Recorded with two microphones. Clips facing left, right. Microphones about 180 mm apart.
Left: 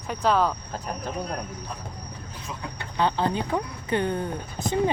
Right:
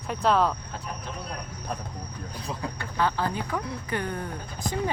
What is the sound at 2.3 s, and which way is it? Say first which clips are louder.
Vehicle: right 3 dB; 35° right (ahead or behind).